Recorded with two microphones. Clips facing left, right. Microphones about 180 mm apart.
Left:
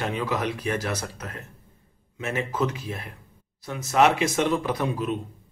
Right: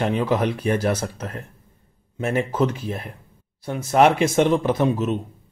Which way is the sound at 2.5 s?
30° right (ahead or behind).